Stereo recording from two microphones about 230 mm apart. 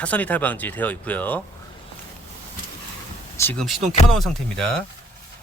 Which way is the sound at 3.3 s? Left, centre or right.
Centre.